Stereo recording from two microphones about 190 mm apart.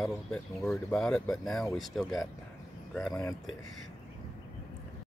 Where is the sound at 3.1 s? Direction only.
15° left (ahead or behind).